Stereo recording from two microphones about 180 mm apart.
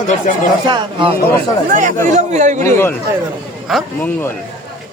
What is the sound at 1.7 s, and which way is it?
Speech, 45° right (ahead or behind).